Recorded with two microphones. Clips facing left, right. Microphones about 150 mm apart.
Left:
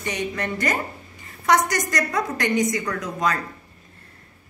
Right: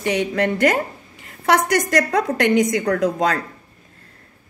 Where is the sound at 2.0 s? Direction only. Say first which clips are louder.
Right 4 dB; 70° right (ahead or behind).